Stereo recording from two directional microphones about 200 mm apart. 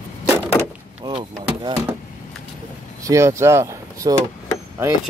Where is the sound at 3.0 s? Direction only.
15° right (ahead or behind).